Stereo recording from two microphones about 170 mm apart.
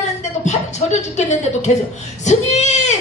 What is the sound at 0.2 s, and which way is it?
Speech, 45° left (ahead or behind).